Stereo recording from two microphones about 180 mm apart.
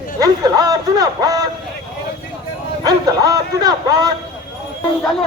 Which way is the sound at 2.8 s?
20° right (ahead or behind).